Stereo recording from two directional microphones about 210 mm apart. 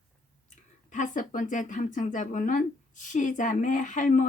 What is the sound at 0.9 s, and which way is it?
A woman's voice, 35° left (ahead or behind).